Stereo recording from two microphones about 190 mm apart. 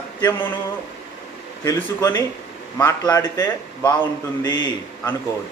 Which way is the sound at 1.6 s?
15° left (ahead or behind).